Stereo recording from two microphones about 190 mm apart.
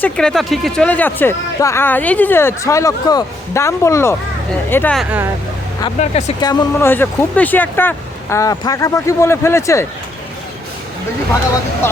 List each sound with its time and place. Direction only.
0.0 s speech: 5° left (ahead or behind)
4.9 s speech: 10° right (ahead or behind)
6.0 s speech: 35° left (ahead or behind)
6.4 s speech: 15° left (ahead or behind)